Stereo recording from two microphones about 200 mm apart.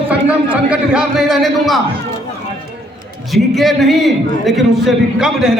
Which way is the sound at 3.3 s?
Centre (ahead or behind).